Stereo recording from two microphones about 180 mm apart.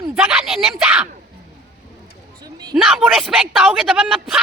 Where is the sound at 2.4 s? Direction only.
20° right (ahead or behind).